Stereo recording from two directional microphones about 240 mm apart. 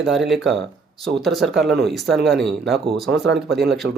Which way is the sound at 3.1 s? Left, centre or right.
Right.